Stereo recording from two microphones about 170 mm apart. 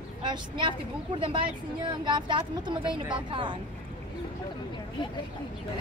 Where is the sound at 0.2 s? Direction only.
30° right (ahead or behind).